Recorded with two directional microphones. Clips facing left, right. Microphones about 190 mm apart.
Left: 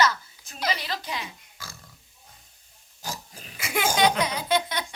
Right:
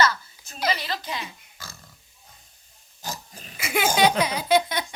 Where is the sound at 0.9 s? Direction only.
10° left (ahead or behind).